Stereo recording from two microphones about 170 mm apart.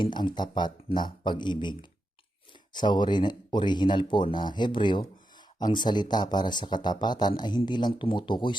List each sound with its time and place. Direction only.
0.0 s speech: 25° left (ahead or behind)
2.7 s speech: 25° left (ahead or behind)